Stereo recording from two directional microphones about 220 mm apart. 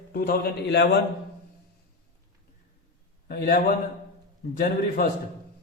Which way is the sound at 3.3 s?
45° left (ahead or behind).